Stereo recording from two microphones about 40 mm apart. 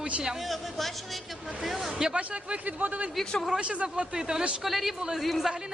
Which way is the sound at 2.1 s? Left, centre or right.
Right.